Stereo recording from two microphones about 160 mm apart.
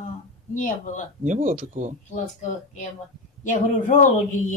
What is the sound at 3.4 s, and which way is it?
Speech, 50° left (ahead or behind).